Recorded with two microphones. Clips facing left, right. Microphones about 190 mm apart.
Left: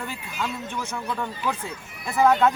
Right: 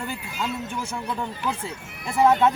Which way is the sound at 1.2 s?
25° right (ahead or behind).